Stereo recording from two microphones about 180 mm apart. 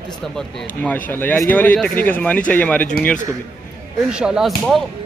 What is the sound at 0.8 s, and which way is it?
Speech, 10° left (ahead or behind).